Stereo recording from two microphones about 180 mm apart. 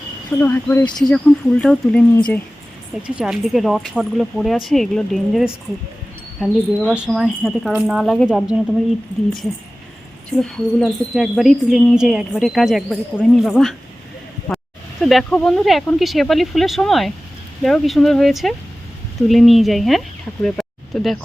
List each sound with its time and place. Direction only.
0.3 s speech: 10° left (ahead or behind)
1.1 s speech: 5° left (ahead or behind)
3.1 s speech: 5° right (ahead or behind)
10.3 s speech: centre (ahead or behind)
15.0 s speech: 5° left (ahead or behind)
20.4 s a sound: centre (ahead or behind)